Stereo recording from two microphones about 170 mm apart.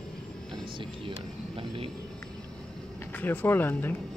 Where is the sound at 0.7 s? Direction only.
30° right (ahead or behind).